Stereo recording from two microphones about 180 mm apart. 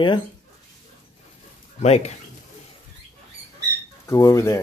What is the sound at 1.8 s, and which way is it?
Speech, 40° left (ahead or behind).